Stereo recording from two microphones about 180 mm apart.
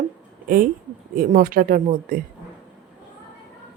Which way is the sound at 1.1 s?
50° right (ahead or behind).